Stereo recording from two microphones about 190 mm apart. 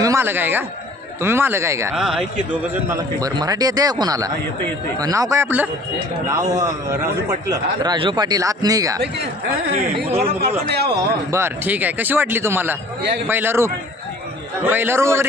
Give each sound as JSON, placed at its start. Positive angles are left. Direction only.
{"t": 0.0, "sound": "speech", "side_deg": -15}
{"t": 2.0, "sound": "a man's voice", "side_deg": -5}
{"t": 10.7, "sound": "a man's voice", "side_deg": -60}
{"t": 11.3, "sound": "speech", "side_deg": -10}